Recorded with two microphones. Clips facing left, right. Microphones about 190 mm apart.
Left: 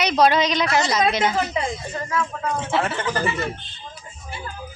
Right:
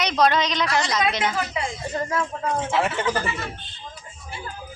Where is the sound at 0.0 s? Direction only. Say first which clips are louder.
Left 3 dB; 10° left (ahead or behind).